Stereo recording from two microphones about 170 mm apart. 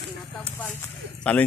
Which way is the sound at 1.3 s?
5° left (ahead or behind).